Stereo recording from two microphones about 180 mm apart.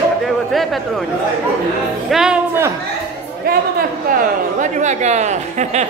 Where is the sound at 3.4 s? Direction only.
55° right (ahead or behind).